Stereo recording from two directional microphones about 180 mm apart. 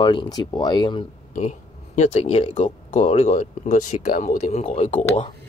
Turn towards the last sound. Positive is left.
turn(degrees=35)  # may be behind; listen again after turning